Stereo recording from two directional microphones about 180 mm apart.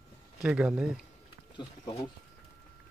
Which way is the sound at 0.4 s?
5° right (ahead or behind).